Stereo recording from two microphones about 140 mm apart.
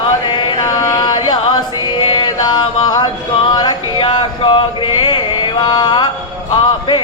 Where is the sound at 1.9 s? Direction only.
35° left (ahead or behind).